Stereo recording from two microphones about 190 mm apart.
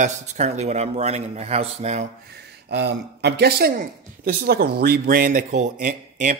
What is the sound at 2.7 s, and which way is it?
A man's voice, 60° right (ahead or behind).